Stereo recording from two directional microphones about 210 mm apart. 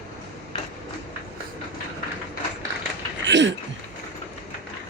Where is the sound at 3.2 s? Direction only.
60° right (ahead or behind).